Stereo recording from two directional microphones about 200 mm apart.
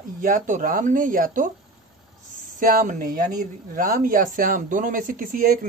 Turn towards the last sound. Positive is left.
turn(degrees=-45)  # may be behind; listen again after turning